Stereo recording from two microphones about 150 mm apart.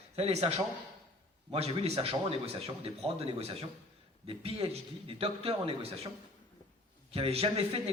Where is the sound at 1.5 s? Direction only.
45° right (ahead or behind).